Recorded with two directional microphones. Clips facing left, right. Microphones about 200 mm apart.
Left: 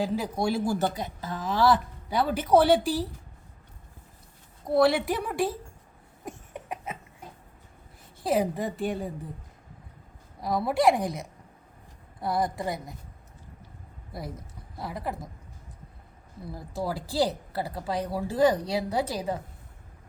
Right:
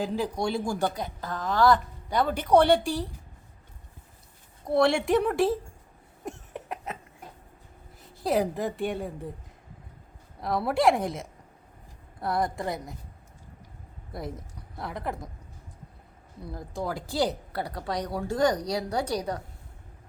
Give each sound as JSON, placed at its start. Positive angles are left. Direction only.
{"t": 0.0, "sound": "a woman's voice", "side_deg": 5}
{"t": 4.6, "sound": "a woman's voice", "side_deg": 0}
{"t": 6.2, "sound": "cough", "side_deg": 0}
{"t": 8.2, "sound": "a woman's voice", "side_deg": 0}
{"t": 10.4, "sound": "a woman's voice", "side_deg": 0}
{"t": 12.2, "sound": "a woman's voice", "side_deg": 0}
{"t": 14.1, "sound": "a woman's voice", "side_deg": 0}
{"t": 16.5, "sound": "a woman's voice", "side_deg": 5}